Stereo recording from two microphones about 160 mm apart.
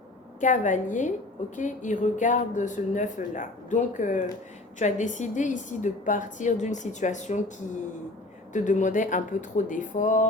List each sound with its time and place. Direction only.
0.3 s a woman's voice: 50° left (ahead or behind)
8.5 s a woman's voice: 50° left (ahead or behind)